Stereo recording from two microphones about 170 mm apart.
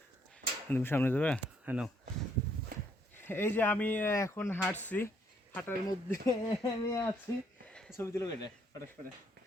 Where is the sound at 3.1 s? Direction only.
10° left (ahead or behind).